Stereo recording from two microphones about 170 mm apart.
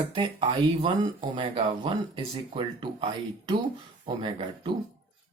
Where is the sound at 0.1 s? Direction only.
30° right (ahead or behind).